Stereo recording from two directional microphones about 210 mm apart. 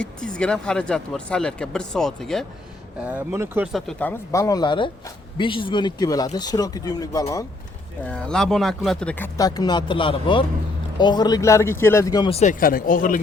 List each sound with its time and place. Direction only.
0.2 s speech: 5° left (ahead or behind)
3.0 s speech: 10° right (ahead or behind)
4.3 s speech: 15° left (ahead or behind)
8.0 s speech: 5° left (ahead or behind)
12.4 s speech: 40° left (ahead or behind)